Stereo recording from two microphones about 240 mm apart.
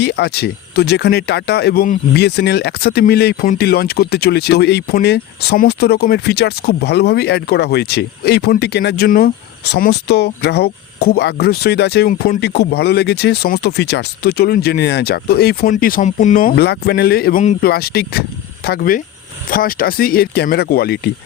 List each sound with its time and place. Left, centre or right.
0.0 s speech: left